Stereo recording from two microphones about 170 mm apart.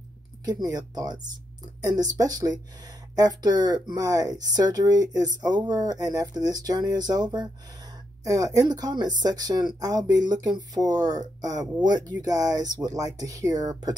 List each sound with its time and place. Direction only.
0.5 s speech: 20° right (ahead or behind)